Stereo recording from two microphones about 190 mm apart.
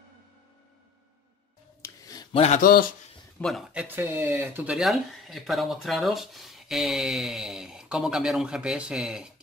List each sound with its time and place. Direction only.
1.8 s a sound: 20° left (ahead or behind)
2.4 s speech: 45° left (ahead or behind)
3.3 s speech: centre (ahead or behind)